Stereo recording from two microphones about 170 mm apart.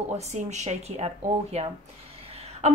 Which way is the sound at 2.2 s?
35° right (ahead or behind).